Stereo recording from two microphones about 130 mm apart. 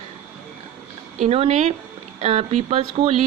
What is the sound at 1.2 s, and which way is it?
Speech, 50° right (ahead or behind).